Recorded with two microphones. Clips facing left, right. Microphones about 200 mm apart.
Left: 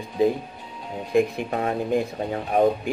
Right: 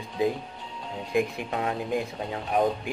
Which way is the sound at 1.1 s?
50° left (ahead or behind).